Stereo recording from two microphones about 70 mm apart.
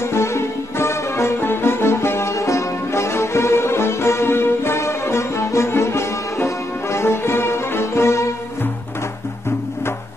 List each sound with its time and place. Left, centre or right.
0.0 s music: left